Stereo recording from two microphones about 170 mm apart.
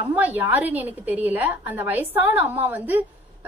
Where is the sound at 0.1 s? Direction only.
10° right (ahead or behind).